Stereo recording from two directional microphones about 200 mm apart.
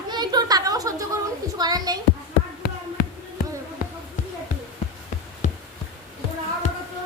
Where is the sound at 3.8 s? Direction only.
45° left (ahead or behind).